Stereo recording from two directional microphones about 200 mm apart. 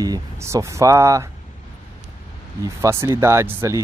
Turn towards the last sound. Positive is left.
turn(degrees=-15)  # may be behind; listen again after turning